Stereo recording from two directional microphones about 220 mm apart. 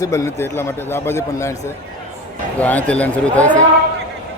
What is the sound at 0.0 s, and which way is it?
A man's voice, 15° left (ahead or behind).